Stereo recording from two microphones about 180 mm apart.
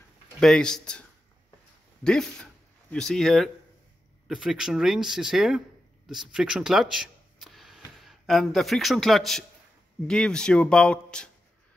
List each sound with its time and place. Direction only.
0.4 s speech: 5° left (ahead or behind)
2.9 s speech: centre (ahead or behind)